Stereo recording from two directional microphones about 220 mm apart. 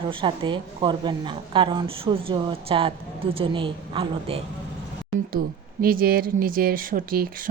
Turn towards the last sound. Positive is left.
turn(degrees=-40)  # may be behind; listen again after turning